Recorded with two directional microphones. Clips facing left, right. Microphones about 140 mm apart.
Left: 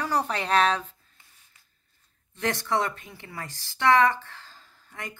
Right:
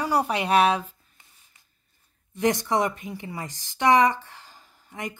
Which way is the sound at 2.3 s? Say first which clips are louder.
Right 4 dB; 15° right (ahead or behind).